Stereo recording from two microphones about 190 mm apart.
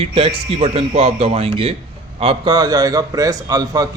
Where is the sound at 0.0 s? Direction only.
30° right (ahead or behind).